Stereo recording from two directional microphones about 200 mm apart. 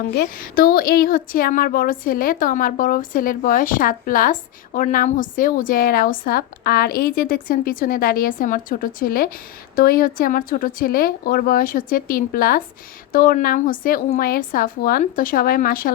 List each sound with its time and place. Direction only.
0.1 s a woman's voice: 50° left (ahead or behind)